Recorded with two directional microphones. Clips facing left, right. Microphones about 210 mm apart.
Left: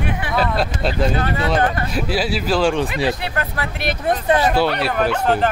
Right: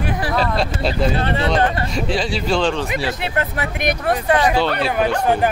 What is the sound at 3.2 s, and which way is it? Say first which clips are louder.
Speech: right 2 dB; 20° right (ahead or behind).